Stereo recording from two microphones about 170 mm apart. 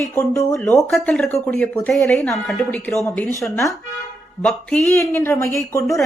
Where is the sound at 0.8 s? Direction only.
Centre (ahead or behind).